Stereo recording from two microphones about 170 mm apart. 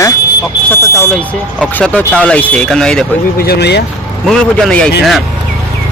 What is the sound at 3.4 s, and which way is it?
Speech, 70° left (ahead or behind).